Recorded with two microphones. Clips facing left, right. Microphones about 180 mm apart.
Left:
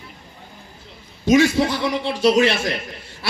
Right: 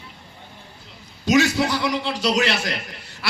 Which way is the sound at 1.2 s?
25° left (ahead or behind).